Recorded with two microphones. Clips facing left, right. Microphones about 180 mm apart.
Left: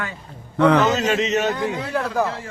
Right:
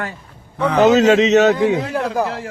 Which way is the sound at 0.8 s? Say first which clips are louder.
Right 8 dB; 75° right (ahead or behind).